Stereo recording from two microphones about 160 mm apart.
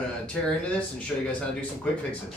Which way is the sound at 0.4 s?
5° left (ahead or behind).